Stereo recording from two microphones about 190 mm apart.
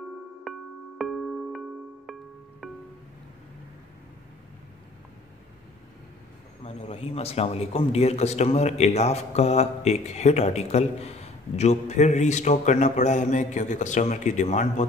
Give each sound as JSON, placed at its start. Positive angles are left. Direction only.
{"t": 0.4, "sound": "music", "side_deg": 0}
{"t": 6.6, "sound": "a man's voice", "side_deg": 35}